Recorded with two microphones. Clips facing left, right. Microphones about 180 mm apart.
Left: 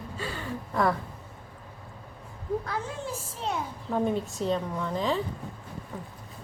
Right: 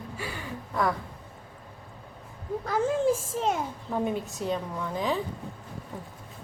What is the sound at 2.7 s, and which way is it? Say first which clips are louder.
Speech: right 9 dB; 45° right (ahead or behind).